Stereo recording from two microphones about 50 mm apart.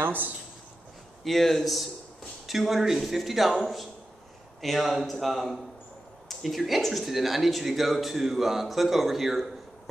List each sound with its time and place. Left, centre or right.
0.0 s speech: right
1.2 s speech: centre